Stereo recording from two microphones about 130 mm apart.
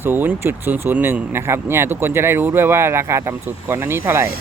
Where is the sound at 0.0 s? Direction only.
15° right (ahead or behind).